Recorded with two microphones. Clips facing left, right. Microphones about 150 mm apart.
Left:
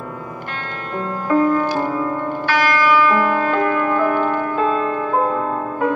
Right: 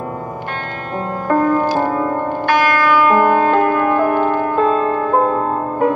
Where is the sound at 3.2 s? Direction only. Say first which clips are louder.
Right 5 dB; 55° right (ahead or behind).